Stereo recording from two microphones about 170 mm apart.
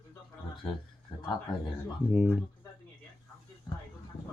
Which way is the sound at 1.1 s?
30° left (ahead or behind).